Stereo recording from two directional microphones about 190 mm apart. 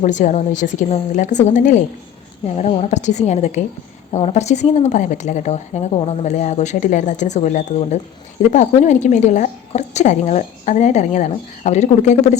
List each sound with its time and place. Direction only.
0.0 s a woman's voice: 40° left (ahead or behind)